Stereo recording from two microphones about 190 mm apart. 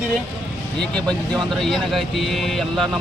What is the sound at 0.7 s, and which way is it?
Speech, 5° left (ahead or behind).